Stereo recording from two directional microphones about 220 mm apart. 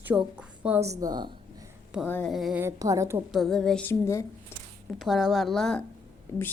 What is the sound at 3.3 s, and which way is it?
Speech, centre (ahead or behind).